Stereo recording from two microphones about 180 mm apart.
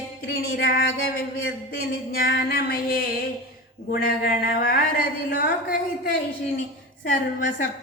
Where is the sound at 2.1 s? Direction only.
60° left (ahead or behind).